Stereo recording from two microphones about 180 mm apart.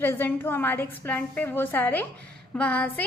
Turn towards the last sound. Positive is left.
turn(degrees=10)  # may be behind; listen again after turning